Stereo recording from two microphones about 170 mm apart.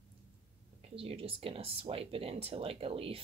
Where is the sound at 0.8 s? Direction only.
35° right (ahead or behind).